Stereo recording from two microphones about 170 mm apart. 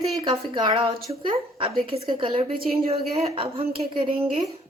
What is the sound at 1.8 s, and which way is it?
A woman's voice, 35° right (ahead or behind).